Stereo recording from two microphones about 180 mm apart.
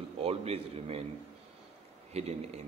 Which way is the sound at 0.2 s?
35° right (ahead or behind).